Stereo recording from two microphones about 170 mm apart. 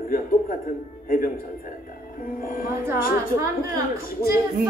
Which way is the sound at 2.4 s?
55° left (ahead or behind).